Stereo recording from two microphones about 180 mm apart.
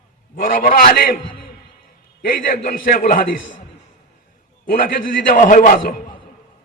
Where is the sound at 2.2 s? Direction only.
50° left (ahead or behind).